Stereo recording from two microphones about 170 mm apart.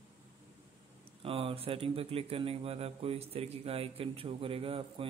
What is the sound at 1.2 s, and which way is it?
Speech, 35° right (ahead or behind).